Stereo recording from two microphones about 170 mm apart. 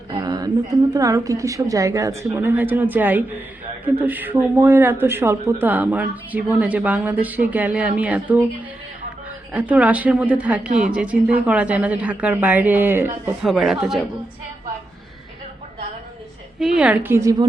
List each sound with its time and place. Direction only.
0.1 s a sound: 25° right (ahead or behind)
0.9 s speech: 20° right (ahead or behind)
9.5 s speech: 10° right (ahead or behind)
13.4 s speech: centre (ahead or behind)
16.6 s speech: 5° right (ahead or behind)